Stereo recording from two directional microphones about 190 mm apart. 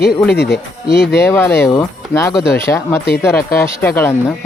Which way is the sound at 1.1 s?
15° left (ahead or behind).